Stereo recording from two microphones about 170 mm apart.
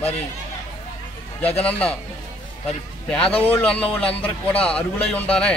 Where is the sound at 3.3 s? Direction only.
10° left (ahead or behind).